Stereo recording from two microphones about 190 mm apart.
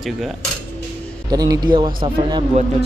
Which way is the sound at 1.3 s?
20° right (ahead or behind).